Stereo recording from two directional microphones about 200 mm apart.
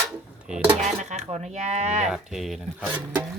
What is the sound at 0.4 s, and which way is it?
Cutlery, 5° right (ahead or behind).